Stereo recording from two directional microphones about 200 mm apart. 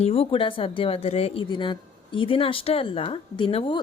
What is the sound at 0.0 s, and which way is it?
A woman's voice, 30° left (ahead or behind).